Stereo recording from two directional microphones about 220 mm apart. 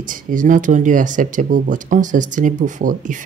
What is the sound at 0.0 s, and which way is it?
Speech, 35° right (ahead or behind).